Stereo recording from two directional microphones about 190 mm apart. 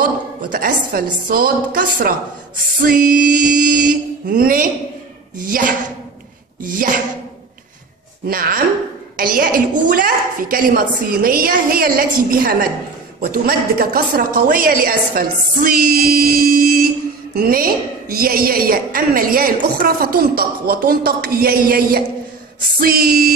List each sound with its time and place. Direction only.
0.4 s a woman's voice: 45° right (ahead or behind)
8.3 s a woman's voice: 50° right (ahead or behind)